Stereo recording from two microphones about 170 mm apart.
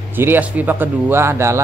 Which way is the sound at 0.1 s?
10° right (ahead or behind).